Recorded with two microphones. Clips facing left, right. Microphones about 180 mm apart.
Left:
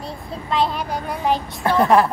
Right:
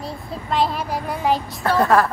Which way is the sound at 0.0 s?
Centre (ahead or behind).